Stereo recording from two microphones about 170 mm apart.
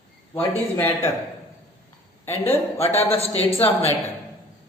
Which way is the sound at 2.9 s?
35° left (ahead or behind).